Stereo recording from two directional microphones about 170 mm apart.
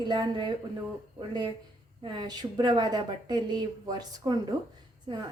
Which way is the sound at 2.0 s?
25° right (ahead or behind).